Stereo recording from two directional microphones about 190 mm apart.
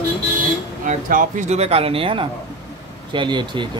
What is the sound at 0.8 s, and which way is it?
Speech, 45° right (ahead or behind).